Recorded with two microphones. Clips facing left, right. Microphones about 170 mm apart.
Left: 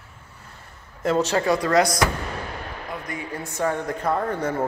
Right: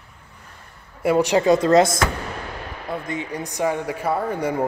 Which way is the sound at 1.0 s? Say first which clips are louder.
Right 4 dB; 10° right (ahead or behind).